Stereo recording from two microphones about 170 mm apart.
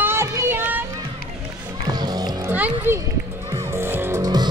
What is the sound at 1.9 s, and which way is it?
Music, 25° right (ahead or behind).